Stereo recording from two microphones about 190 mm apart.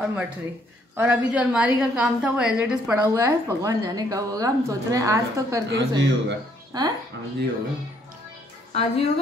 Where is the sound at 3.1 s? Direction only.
15° right (ahead or behind).